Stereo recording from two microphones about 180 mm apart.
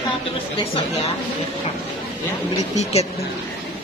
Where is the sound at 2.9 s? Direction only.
35° left (ahead or behind).